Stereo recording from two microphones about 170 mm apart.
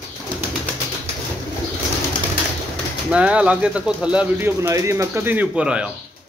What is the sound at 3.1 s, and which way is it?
Speech, 5° right (ahead or behind).